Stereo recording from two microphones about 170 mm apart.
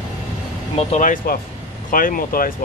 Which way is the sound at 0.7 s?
45° left (ahead or behind).